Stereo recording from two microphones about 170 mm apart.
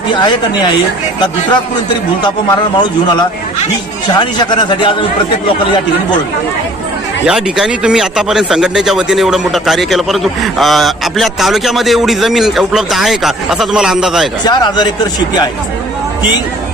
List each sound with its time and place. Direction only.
0.1 s speech: 25° left (ahead or behind)
2.2 s speech: 25° left (ahead or behind)
7.3 s speech: 5° right (ahead or behind)
14.4 s speech: 25° left (ahead or behind)